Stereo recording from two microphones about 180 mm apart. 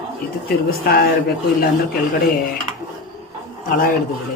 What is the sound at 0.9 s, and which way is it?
Speech, 60° left (ahead or behind).